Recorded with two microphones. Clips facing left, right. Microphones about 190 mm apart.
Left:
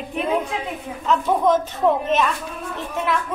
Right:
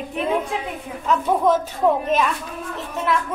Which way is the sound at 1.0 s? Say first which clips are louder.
Even; 10° right (ahead or behind).